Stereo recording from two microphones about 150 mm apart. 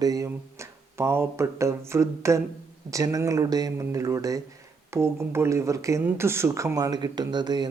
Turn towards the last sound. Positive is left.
turn(degrees=-30)  # may be behind; listen again after turning